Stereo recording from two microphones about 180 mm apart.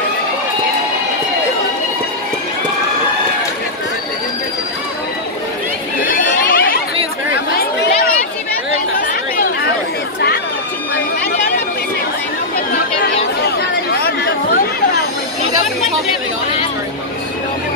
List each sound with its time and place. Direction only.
6.4 s chatter: 55° left (ahead or behind)
7.3 s chatter: 70° left (ahead or behind)
13.6 s chatter: 65° left (ahead or behind)